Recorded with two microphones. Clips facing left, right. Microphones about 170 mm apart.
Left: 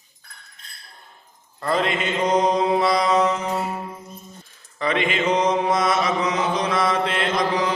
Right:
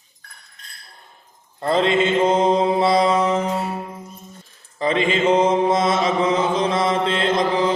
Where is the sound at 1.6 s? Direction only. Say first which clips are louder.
Right 5 dB; 25° right (ahead or behind).